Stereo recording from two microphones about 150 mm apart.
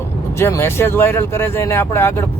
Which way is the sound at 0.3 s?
15° left (ahead or behind).